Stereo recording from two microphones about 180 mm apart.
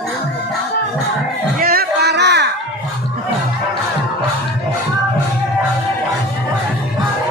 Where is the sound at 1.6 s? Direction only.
60° right (ahead or behind).